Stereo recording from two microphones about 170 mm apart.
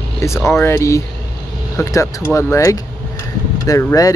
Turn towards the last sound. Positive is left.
turn(degrees=20)  # may be behind; listen again after turning